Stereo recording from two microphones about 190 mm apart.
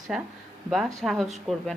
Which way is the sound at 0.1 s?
5° right (ahead or behind).